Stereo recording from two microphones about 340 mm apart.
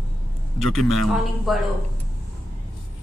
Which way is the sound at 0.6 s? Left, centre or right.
Centre.